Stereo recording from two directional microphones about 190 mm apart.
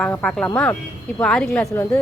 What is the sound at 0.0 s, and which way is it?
Speech, 5° left (ahead or behind).